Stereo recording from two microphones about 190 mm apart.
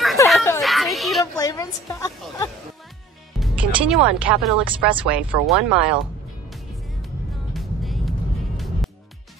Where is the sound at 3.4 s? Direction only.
5° right (ahead or behind).